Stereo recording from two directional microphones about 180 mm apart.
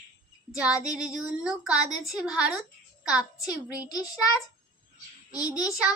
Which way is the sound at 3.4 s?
20° left (ahead or behind).